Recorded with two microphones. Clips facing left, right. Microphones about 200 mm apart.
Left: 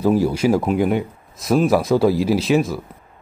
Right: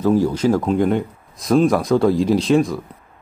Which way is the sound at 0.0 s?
10° left (ahead or behind).